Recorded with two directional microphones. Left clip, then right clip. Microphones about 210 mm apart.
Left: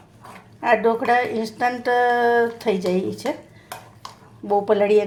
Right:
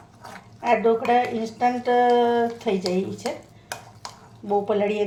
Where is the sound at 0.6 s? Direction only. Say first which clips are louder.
Left 2 dB; 55° left (ahead or behind).